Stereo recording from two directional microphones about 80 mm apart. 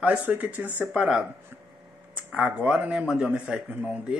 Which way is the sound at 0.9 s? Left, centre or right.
Centre.